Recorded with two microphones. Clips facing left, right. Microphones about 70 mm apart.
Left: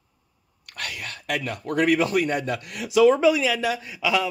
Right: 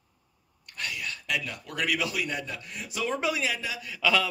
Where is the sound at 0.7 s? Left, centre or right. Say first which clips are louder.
Left 1 dB; left.